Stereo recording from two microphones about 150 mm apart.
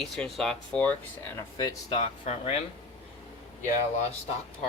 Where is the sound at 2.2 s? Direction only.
45° left (ahead or behind).